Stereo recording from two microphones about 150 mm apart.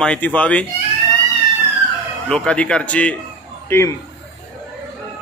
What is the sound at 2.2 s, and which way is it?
A man's voice, 5° left (ahead or behind).